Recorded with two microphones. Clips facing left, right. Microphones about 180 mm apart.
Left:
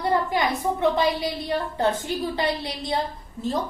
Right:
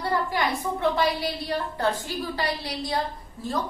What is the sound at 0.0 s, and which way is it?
A woman's voice, 20° left (ahead or behind).